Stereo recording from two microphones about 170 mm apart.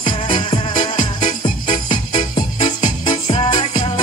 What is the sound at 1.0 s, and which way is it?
Music, 50° left (ahead or behind).